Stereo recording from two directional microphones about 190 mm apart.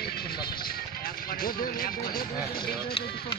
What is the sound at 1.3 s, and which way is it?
Speech, 50° left (ahead or behind).